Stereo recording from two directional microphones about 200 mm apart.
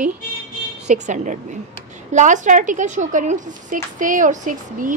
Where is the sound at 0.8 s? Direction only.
35° right (ahead or behind).